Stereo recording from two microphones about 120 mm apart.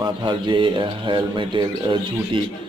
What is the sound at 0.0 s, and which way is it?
Speech, 40° right (ahead or behind).